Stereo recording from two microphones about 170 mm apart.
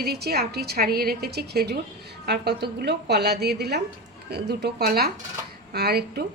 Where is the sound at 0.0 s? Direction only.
65° right (ahead or behind).